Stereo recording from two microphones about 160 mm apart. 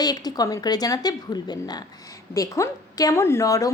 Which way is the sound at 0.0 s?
25° left (ahead or behind).